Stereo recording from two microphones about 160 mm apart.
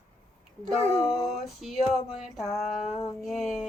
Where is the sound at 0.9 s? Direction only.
Centre (ahead or behind).